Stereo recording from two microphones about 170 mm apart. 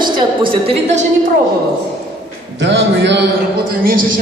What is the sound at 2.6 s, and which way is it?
Speech, 90° right.